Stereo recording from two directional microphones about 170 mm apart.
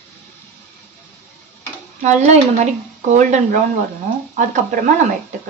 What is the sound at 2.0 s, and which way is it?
Speech, 45° right (ahead or behind).